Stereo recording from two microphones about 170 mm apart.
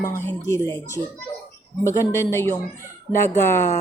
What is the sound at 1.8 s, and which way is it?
Speech, 15° left (ahead or behind).